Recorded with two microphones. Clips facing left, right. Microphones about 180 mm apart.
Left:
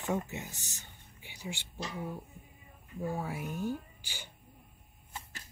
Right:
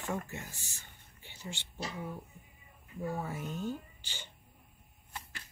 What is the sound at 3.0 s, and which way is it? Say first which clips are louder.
Speech: left 1 dB; 10° left (ahead or behind).